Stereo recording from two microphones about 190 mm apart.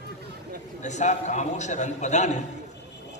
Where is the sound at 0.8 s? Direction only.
40° left (ahead or behind).